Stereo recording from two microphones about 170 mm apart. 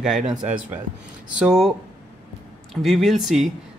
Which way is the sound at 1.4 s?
5° right (ahead or behind).